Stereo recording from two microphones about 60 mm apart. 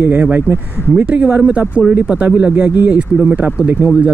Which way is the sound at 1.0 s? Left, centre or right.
Centre.